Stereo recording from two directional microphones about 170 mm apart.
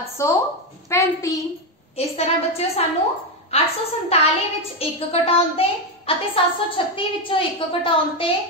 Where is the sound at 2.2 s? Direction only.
40° left (ahead or behind).